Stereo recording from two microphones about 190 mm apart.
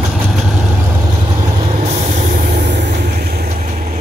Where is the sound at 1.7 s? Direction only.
40° right (ahead or behind); by 3.6 s 55° right (ahead or behind).